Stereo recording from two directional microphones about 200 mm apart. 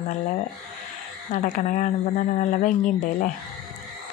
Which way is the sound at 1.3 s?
40° left (ahead or behind).